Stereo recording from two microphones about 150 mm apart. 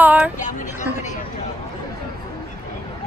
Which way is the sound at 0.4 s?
55° left (ahead or behind).